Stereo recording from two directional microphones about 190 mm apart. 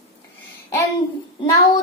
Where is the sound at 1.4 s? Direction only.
25° left (ahead or behind).